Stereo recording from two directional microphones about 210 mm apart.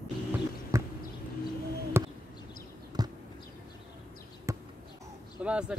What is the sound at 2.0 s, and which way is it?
Basketball bounce, 10° right (ahead or behind).